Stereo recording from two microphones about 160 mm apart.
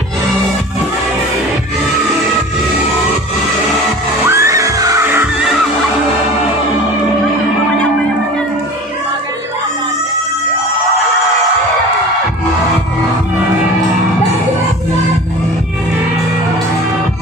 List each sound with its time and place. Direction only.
4.3 s music: 20° right (ahead or behind)